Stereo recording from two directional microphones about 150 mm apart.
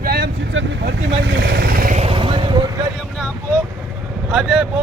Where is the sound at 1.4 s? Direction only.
90° right; by 2.0 s 75° right (ahead or behind).